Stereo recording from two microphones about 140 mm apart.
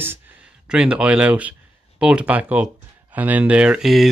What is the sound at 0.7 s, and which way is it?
Speech, 5° right (ahead or behind).